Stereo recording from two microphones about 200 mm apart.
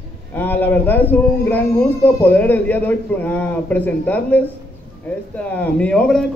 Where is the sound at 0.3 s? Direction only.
10° left (ahead or behind).